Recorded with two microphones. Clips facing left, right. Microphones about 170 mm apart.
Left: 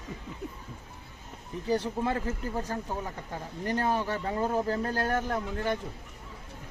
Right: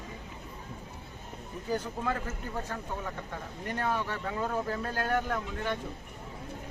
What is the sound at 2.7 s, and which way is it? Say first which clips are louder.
Speech: left 2 dB; 35° left (ahead or behind).